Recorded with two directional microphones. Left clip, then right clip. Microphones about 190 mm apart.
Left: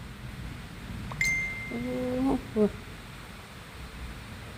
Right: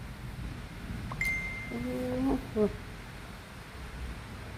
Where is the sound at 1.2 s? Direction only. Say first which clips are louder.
Left 4 dB; 40° left (ahead or behind).